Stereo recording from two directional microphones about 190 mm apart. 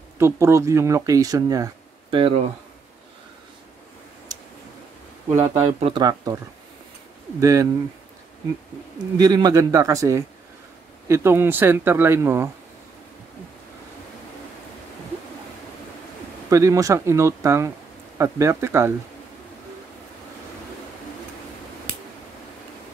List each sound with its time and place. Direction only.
0.2 s speech: 15° right (ahead or behind)
5.3 s speech: 15° right (ahead or behind)
5.7 s speech: 30° right (ahead or behind)
9.2 s speech: 20° right (ahead or behind)
16.4 s speech: 15° right (ahead or behind)